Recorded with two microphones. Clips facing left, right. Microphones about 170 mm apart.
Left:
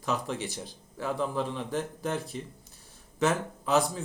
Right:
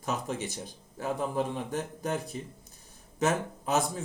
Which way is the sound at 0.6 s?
45° right (ahead or behind).